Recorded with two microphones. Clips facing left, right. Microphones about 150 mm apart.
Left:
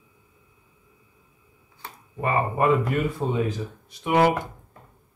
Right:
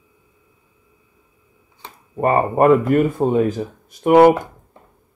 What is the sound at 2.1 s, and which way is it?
Speech, 45° right (ahead or behind).